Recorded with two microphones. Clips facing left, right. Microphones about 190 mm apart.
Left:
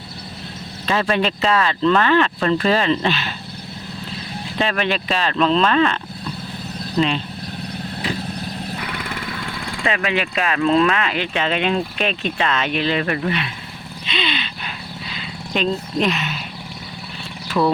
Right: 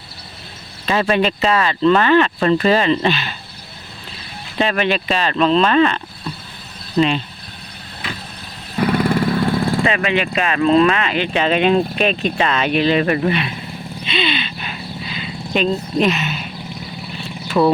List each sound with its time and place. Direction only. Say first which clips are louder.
0.9 s speech: right 3 dB; 5° right (ahead or behind)
4.5 s speech: right 3 dB; 5° right (ahead or behind)
8.8 s vehicle: right 13 dB; 35° right (ahead or behind)
9.8 s speech: right 3 dB; centre (ahead or behind)
11.3 s speech: right 6 dB; 35° right (ahead or behind)
12.5 s speech: right 5 dB; 10° right (ahead or behind)
14.1 s wild animals: right 4 dB; 5° right (ahead or behind)
15.1 s vehicle: right 3 dB; 5° right (ahead or behind)
17.6 s speech: right 4 dB; 20° right (ahead or behind)